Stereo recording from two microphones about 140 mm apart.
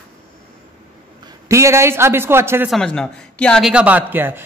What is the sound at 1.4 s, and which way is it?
A woman's voice, 20° right (ahead or behind).